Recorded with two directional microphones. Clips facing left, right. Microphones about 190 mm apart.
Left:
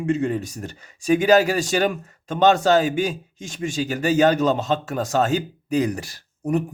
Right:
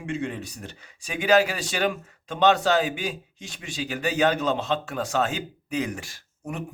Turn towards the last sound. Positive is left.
turn(degrees=40)  # may be behind; listen again after turning